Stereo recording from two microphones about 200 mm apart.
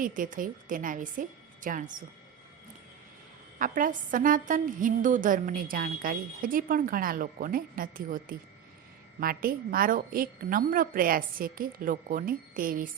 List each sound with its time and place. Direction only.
0.0 s a woman's voice: 40° right (ahead or behind)
3.6 s a woman's voice: 45° right (ahead or behind)